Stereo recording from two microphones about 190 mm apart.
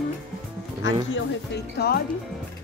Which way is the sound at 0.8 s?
80° left.